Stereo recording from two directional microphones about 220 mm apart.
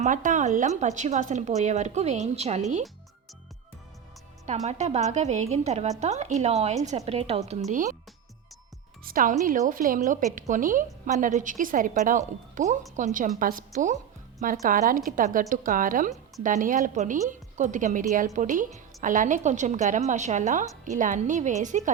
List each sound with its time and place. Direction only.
0.0 s a woman's voice: 35° right (ahead or behind)
4.4 s a woman's voice: 30° right (ahead or behind)
9.0 s a woman's voice: 40° right (ahead or behind)